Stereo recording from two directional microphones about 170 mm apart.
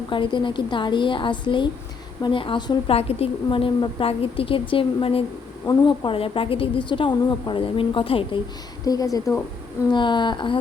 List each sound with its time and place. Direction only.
0.1 s a woman's voice: 30° left (ahead or behind)
8.8 s a woman's voice: 20° left (ahead or behind)